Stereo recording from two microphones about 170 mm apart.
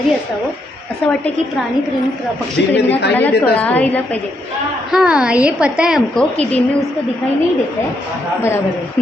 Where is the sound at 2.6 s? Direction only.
90° left.